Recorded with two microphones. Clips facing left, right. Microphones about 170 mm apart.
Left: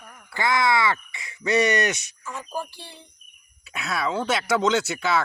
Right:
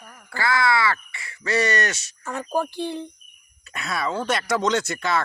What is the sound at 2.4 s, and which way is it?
Speech, 60° right (ahead or behind).